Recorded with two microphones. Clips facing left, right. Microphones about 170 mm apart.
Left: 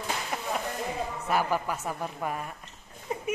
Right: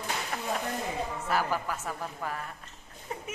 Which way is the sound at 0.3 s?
10° left (ahead or behind).